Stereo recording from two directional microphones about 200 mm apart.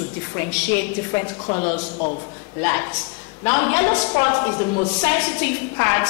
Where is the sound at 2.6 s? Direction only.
15° left (ahead or behind).